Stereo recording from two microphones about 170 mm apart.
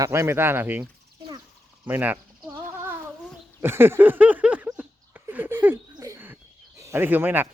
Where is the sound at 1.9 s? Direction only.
10° right (ahead or behind).